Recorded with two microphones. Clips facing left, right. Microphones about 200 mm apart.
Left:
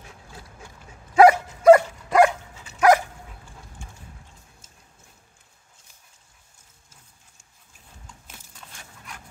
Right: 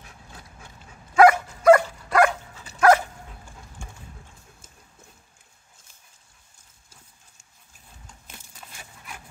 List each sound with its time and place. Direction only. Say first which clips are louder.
1.1 s dog: left 1 dB; 20° left (ahead or behind)
8.3 s dog: right 4 dB; 5° right (ahead or behind)